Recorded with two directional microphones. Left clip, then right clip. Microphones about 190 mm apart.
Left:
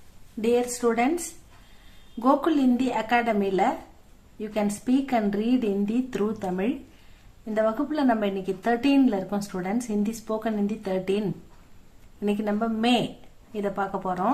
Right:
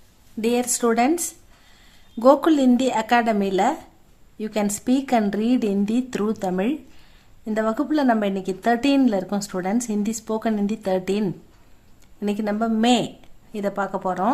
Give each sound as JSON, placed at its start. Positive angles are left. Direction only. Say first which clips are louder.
{"t": 0.4, "sound": "a woman's voice", "louder": "right 2 dB", "side_deg": -50}